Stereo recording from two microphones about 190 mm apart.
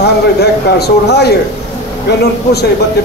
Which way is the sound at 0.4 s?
60° left (ahead or behind).